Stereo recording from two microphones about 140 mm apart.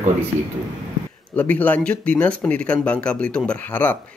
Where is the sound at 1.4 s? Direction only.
10° left (ahead or behind).